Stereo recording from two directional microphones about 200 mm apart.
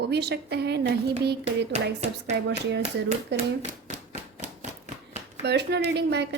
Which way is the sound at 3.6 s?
35° right (ahead or behind).